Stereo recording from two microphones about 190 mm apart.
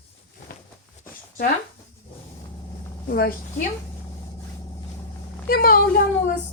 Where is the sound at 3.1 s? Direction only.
55° left (ahead or behind).